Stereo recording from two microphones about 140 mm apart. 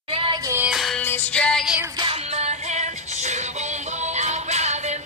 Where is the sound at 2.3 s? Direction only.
55° right (ahead or behind).